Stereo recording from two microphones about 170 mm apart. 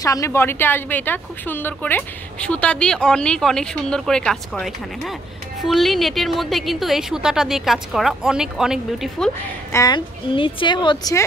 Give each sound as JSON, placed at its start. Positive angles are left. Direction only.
{"t": 0.0, "sound": "a woman's voice", "side_deg": 20}
{"t": 9.7, "sound": "a woman's voice", "side_deg": 20}